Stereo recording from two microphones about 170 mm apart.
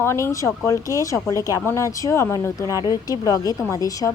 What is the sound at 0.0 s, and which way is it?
A woman's voice, 15° left (ahead or behind).